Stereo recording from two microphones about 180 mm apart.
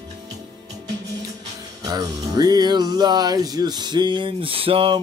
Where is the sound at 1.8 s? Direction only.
20° right (ahead or behind).